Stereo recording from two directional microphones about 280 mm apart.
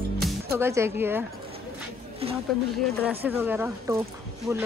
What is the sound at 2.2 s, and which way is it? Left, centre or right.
Speech, right.